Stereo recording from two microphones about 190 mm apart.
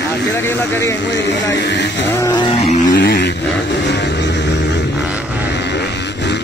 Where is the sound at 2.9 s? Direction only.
55° left (ahead or behind).